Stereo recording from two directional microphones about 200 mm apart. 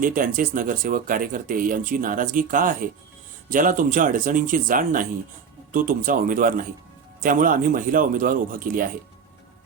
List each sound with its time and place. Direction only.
0.0 s speech: 45° right (ahead or behind)